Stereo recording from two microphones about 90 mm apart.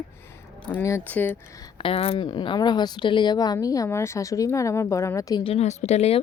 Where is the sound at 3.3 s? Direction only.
45° left (ahead or behind).